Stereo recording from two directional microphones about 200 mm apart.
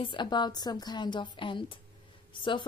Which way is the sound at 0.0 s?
25° left (ahead or behind).